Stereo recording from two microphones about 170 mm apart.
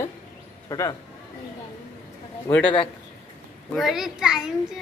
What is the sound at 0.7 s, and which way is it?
Speech, 20° left (ahead or behind).